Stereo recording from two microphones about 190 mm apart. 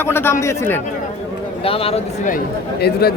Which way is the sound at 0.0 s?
10° left (ahead or behind).